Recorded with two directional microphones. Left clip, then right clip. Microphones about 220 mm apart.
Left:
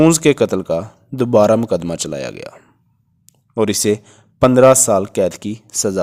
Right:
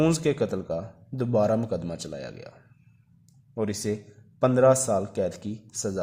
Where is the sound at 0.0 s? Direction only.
35° left (ahead or behind).